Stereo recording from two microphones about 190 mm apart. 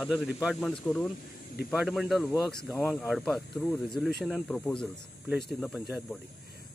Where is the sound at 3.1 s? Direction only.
Centre (ahead or behind).